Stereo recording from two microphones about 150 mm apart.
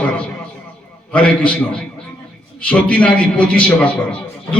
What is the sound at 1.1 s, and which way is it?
A man's voice, 10° left (ahead or behind).